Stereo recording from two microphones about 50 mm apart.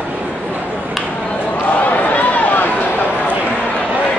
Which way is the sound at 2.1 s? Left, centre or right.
Left.